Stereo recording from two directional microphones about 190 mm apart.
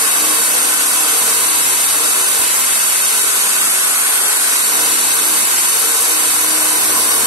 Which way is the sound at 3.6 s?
10° right (ahead or behind).